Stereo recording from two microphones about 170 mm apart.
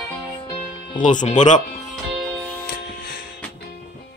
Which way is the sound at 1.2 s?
45° left (ahead or behind).